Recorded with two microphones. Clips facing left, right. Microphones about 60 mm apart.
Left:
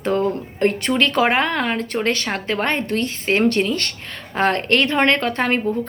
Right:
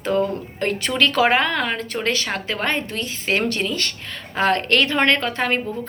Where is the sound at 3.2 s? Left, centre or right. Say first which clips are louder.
Left 3 dB; left.